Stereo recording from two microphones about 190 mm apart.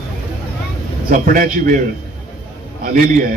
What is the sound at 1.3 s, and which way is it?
Speech, 45° right (ahead or behind).